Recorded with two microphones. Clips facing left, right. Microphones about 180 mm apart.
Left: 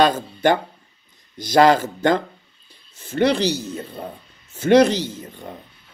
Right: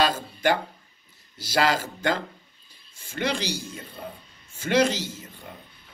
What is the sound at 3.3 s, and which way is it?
Speech, 10° right (ahead or behind).